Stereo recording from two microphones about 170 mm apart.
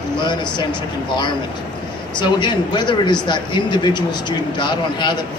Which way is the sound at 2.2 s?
25° left (ahead or behind).